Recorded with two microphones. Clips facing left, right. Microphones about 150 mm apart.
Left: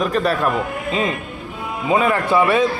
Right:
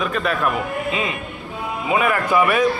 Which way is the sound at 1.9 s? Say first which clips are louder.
Left 2 dB; 30° left (ahead or behind).